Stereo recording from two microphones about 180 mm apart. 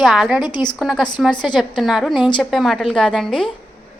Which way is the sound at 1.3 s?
25° left (ahead or behind).